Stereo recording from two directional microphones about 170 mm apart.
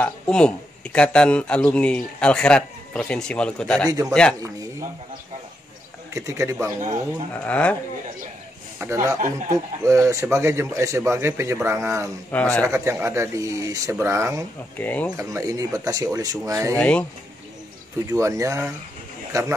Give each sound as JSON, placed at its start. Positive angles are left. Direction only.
{"t": 0.0, "sound": "speech", "side_deg": 5}
{"t": 6.1, "sound": "a man's voice", "side_deg": -15}
{"t": 7.4, "sound": "speech", "side_deg": 5}
{"t": 8.7, "sound": "a man's voice", "side_deg": -15}
{"t": 12.3, "sound": "speech", "side_deg": 10}
{"t": 12.6, "sound": "a man's voice", "side_deg": -15}
{"t": 14.8, "sound": "speech", "side_deg": 10}
{"t": 15.1, "sound": "speech", "side_deg": -20}
{"t": 16.7, "sound": "speech", "side_deg": 5}
{"t": 18.1, "sound": "a man's voice", "side_deg": -20}